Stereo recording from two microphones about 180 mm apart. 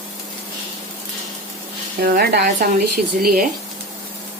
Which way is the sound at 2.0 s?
55° right (ahead or behind).